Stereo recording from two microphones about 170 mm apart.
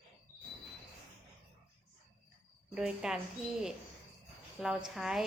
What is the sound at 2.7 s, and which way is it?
Speech, 5° right (ahead or behind).